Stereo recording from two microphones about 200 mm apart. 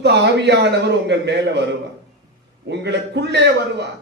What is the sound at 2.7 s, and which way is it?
Speech, 60° right (ahead or behind).